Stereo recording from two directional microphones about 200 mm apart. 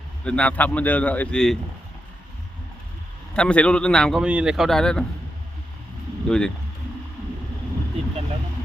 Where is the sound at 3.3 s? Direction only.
5° left (ahead or behind).